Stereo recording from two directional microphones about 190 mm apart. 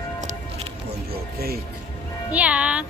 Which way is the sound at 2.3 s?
5° right (ahead or behind).